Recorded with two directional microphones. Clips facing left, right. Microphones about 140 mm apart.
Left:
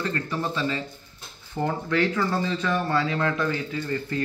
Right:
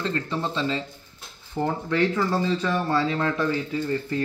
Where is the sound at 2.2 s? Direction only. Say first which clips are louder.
Right 2 dB; 5° right (ahead or behind).